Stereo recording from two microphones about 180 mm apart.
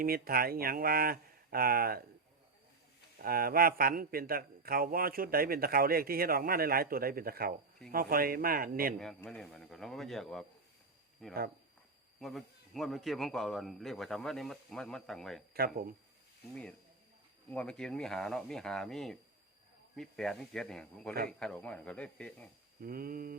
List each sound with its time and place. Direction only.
0.0 s a man's voice: 55° right (ahead or behind)
3.2 s a man's voice: 55° right (ahead or behind)
9.0 s speech: 5° left (ahead or behind)
15.5 s a man's voice: 55° right (ahead or behind)
17.5 s speech: 5° left (ahead or behind)
22.8 s a man's voice: 55° right (ahead or behind)